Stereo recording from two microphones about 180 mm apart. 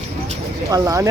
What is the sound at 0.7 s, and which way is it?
Speech, 20° right (ahead or behind).